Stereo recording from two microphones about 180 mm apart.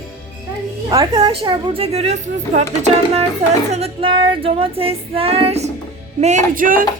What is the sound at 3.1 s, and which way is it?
Speech, 40° right (ahead or behind).